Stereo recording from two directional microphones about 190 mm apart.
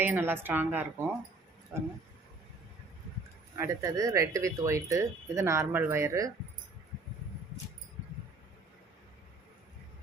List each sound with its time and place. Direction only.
0.0 s speech: 10° right (ahead or behind)
3.6 s speech: 15° right (ahead or behind)